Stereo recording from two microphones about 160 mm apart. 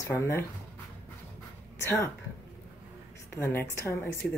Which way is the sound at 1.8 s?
15° left (ahead or behind).